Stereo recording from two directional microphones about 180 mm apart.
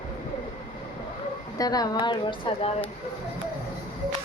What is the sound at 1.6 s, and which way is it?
A woman's voice, 20° left (ahead or behind).